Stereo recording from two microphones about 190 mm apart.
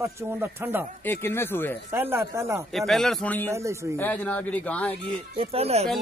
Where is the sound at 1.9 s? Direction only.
10° right (ahead or behind).